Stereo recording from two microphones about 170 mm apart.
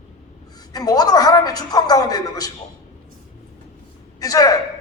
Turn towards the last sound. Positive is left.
turn(degrees=20)  # may be behind; listen again after turning